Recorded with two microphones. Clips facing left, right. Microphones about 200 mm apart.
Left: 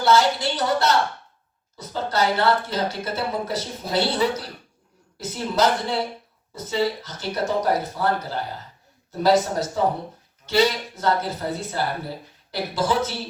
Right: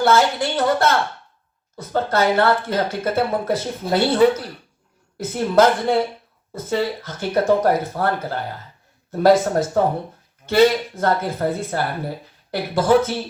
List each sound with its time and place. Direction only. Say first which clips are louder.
0.0 s a woman's voice: right 2 dB; 55° right (ahead or behind)